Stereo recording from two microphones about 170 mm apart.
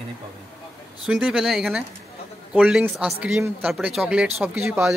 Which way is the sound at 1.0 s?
5° right (ahead or behind).